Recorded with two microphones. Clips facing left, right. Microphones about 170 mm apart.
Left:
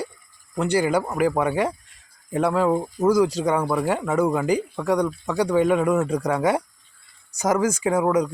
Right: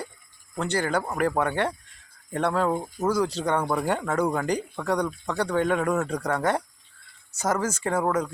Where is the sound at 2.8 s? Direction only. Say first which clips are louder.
Left 6 dB; 35° left (ahead or behind).